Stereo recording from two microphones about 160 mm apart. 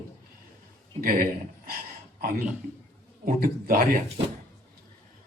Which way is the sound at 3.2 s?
65° right (ahead or behind).